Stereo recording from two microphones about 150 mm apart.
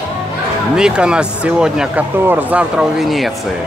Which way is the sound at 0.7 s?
5° right (ahead or behind).